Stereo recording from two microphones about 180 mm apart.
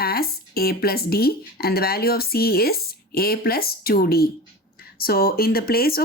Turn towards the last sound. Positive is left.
turn(degrees=55)  # may be behind; listen again after turning